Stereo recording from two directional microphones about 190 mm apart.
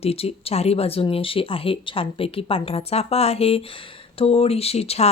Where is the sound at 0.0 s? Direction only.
30° left (ahead or behind).